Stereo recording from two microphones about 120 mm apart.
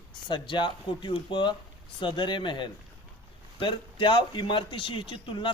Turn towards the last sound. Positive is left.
turn(degrees=45)  # may be behind; listen again after turning